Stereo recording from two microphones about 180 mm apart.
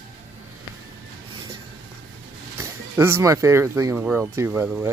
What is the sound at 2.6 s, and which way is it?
Speech, 15° right (ahead or behind).